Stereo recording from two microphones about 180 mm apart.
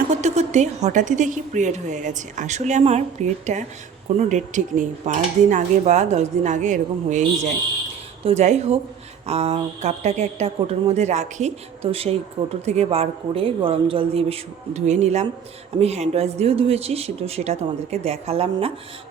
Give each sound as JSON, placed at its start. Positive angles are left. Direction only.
{"t": 0.1, "sound": "speech", "side_deg": -40}